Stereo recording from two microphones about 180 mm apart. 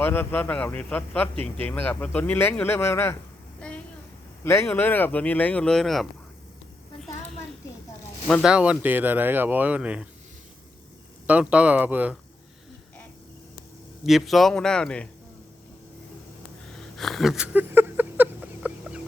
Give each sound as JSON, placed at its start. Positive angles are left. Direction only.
{"t": 0.0, "sound": "a man's voice", "side_deg": 10}
{"t": 3.6, "sound": "a sound", "side_deg": 5}
{"t": 4.4, "sound": "a man's voice", "side_deg": 15}
{"t": 8.3, "sound": "speech", "side_deg": 0}
{"t": 11.3, "sound": "speech", "side_deg": -5}
{"t": 14.0, "sound": "a man's voice", "side_deg": 0}
{"t": 16.7, "sound": "a sound", "side_deg": 0}